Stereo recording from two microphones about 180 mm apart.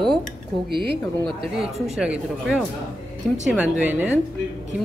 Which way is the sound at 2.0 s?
5° right (ahead or behind).